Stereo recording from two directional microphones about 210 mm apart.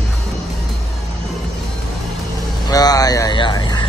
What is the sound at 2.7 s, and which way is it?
Speech, 15° left (ahead or behind).